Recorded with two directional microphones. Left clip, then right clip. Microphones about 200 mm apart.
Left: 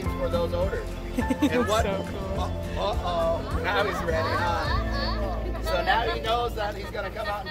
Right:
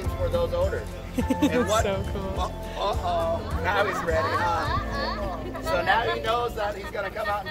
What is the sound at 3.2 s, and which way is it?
Speech, centre (ahead or behind).